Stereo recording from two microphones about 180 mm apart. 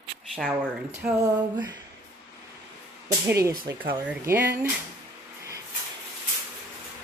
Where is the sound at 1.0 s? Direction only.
20° right (ahead or behind).